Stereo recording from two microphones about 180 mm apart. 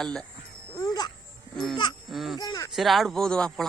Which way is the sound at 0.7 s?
20° left (ahead or behind).